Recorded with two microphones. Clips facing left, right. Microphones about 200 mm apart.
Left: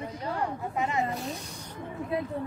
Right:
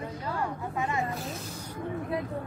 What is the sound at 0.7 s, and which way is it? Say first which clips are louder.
Speech: left 1 dB; 20° left (ahead or behind).